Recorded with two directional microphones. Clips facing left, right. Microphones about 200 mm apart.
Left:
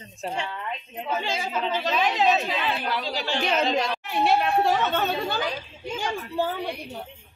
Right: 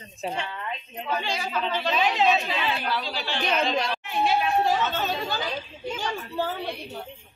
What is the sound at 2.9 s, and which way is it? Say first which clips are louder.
A woman's voice: left 2 dB; 15° left (ahead or behind).